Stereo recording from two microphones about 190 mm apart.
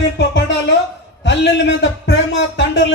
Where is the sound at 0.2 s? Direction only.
70° left (ahead or behind).